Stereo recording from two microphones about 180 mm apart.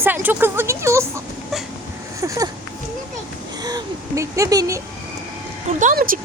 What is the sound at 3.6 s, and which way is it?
Speech, 20° right (ahead or behind).